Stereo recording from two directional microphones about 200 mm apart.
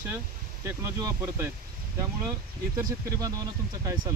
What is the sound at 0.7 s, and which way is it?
Speech, 15° right (ahead or behind).